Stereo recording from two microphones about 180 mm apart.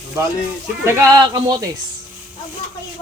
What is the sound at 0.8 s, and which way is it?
Speech, 15° right (ahead or behind).